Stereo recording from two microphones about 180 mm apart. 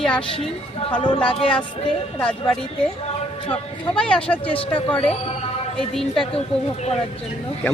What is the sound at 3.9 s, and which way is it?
Speech, 5° left (ahead or behind).